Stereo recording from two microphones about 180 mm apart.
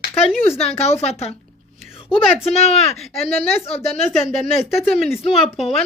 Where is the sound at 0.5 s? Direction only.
35° left (ahead or behind).